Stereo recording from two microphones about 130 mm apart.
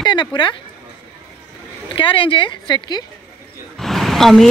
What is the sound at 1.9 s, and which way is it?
Speech, 40° left (ahead or behind).